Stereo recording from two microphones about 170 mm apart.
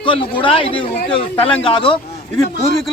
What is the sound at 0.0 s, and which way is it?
A man's voice, 30° left (ahead or behind).